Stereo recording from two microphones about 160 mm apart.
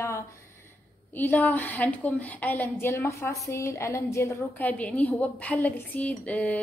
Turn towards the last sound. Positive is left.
turn(degrees=10)  # may be behind; listen again after turning